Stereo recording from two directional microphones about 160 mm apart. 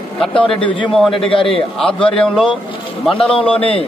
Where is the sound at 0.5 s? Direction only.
30° left (ahead or behind).